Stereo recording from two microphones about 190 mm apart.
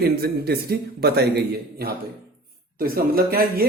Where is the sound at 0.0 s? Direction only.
55° right (ahead or behind).